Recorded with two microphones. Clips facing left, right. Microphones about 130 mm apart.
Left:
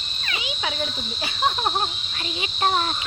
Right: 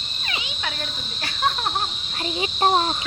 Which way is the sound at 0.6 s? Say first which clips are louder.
Left 5 dB; 10° left (ahead or behind).